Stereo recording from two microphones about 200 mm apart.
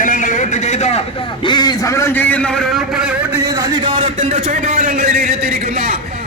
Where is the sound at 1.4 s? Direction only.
20° left (ahead or behind); by 3.4 s 5° right (ahead or behind).